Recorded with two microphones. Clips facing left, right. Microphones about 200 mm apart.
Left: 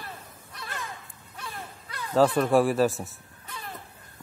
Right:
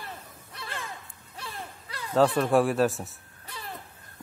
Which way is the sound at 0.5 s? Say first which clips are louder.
Even; 30° right (ahead or behind).